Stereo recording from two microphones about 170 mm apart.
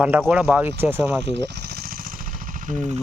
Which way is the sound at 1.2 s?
90° right.